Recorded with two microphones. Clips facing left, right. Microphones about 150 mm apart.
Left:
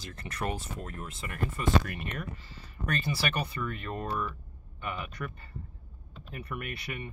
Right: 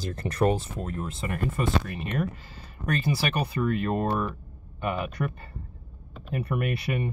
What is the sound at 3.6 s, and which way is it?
Speech, 55° right (ahead or behind).